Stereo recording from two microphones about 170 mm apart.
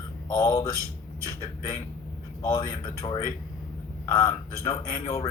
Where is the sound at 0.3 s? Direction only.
20° left (ahead or behind).